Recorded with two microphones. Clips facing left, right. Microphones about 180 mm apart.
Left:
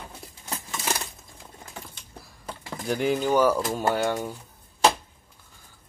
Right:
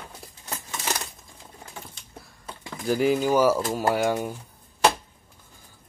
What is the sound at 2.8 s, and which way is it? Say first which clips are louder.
Speech: right 3 dB; centre (ahead or behind).